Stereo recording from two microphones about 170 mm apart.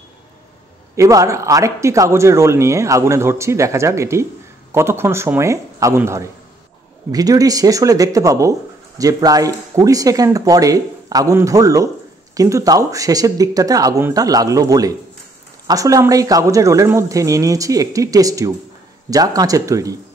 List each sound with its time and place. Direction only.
0.9 s speech: 20° right (ahead or behind)